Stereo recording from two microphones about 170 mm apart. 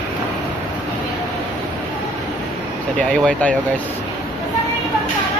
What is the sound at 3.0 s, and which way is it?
Speech, 5° left (ahead or behind).